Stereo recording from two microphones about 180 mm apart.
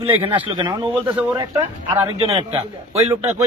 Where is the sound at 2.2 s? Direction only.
30° right (ahead or behind).